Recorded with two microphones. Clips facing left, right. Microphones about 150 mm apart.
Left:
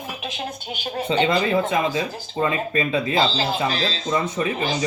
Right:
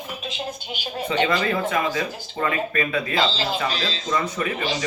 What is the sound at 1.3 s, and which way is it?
Speech, 20° left (ahead or behind).